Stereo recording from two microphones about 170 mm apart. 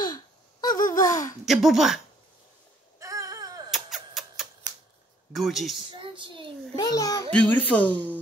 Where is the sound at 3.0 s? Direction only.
20° right (ahead or behind).